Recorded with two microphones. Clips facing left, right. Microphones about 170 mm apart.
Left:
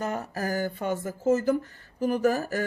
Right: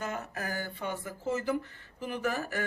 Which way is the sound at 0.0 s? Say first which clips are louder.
Left 6 dB; 35° left (ahead or behind).